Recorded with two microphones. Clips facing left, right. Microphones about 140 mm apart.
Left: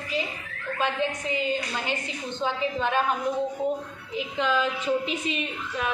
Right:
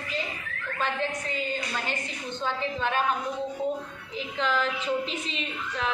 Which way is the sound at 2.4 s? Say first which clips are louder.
Left 3 dB; 15° left (ahead or behind).